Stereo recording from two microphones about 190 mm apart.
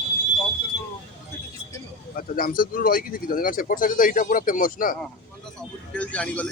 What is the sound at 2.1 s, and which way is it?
Speech, 50° left (ahead or behind).